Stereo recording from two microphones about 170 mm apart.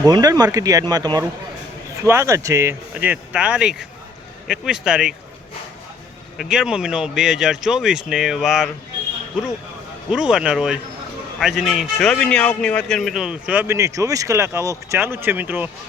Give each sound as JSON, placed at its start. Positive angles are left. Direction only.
{"t": 0.0, "sound": "a man's voice", "side_deg": -20}
{"t": 6.3, "sound": "speech", "side_deg": 0}
{"t": 10.1, "sound": "a man's voice", "side_deg": -5}